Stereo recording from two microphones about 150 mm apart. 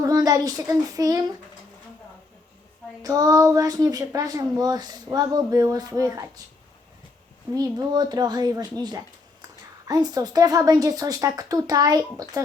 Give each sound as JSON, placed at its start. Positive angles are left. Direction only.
{"t": 0.0, "sound": "a child's voice", "side_deg": -25}
{"t": 3.0, "sound": "a woman's voice", "side_deg": -25}
{"t": 7.5, "sound": "a woman's voice", "side_deg": -25}